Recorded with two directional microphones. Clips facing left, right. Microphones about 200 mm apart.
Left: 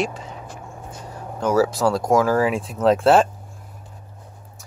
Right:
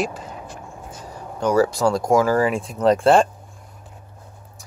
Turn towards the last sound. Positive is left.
turn(degrees=5)  # may be behind; listen again after turning